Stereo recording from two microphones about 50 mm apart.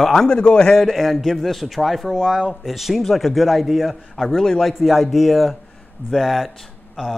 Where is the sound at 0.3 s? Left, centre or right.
Centre.